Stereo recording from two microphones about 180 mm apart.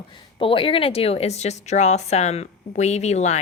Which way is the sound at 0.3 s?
30° left (ahead or behind).